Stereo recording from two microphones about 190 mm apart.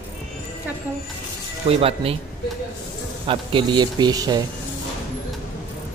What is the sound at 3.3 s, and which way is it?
Speech, 25° right (ahead or behind).